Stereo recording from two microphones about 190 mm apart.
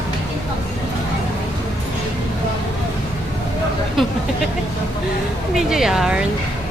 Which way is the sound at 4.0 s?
Centre (ahead or behind).